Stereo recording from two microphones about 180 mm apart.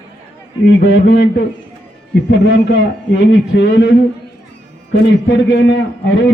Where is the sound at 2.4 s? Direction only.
75° left (ahead or behind).